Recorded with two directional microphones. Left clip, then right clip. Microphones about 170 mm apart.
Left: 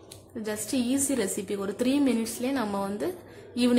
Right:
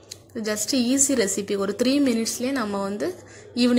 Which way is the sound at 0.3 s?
20° right (ahead or behind).